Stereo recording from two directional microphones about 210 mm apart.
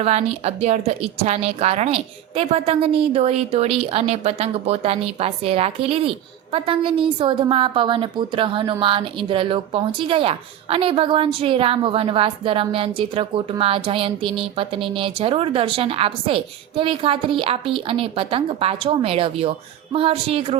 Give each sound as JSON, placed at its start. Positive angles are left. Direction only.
{"t": 0.0, "sound": "a woman's voice", "side_deg": -30}